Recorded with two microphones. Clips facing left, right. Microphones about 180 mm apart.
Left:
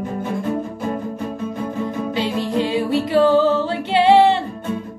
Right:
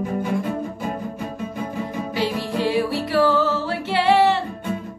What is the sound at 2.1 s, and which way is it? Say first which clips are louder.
Music: left 2 dB; 20° left (ahead or behind).